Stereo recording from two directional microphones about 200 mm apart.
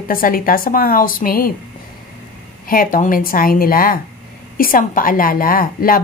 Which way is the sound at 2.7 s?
45° left (ahead or behind).